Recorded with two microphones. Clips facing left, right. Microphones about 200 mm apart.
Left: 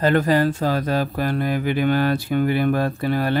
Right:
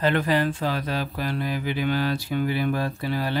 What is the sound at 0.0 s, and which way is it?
Speech, 45° left (ahead or behind).